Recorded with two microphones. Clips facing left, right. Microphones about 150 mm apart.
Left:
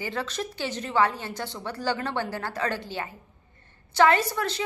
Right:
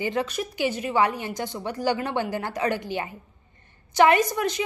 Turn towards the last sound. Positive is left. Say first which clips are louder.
# right 3 dB
turn(degrees=-15)  # may be behind; listen again after turning